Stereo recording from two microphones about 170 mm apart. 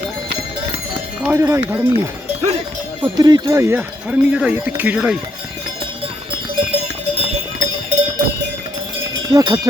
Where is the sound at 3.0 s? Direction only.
25° right (ahead or behind); by 5.2 s 5° right (ahead or behind).